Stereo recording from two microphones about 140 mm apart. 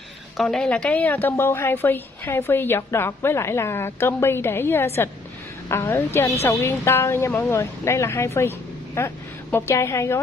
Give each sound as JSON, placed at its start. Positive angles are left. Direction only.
{"t": 0.4, "sound": "a woman's voice", "side_deg": 0}